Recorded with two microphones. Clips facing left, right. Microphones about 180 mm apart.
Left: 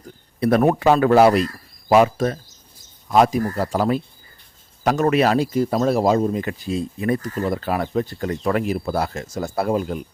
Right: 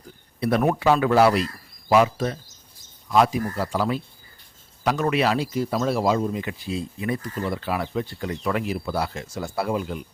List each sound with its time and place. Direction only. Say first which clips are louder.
0.3 s a man's voice: left 5 dB; 50° left (ahead or behind)